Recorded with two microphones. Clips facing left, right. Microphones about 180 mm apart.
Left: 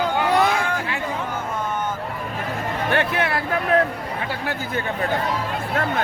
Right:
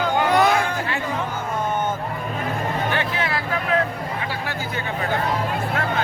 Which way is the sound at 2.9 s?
60° left (ahead or behind).